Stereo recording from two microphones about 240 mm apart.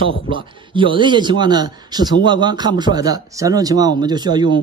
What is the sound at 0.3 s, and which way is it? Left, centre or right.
Speech, right.